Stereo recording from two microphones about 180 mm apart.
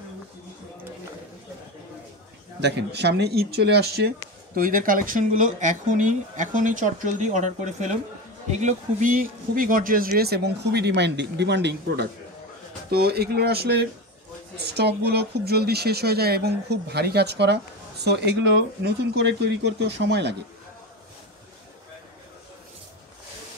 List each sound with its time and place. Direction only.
2.6 s speech: 65° right (ahead or behind)
4.6 s speech: 50° right (ahead or behind); by 12.1 s 70° right (ahead or behind)
12.9 s speech: 60° right (ahead or behind)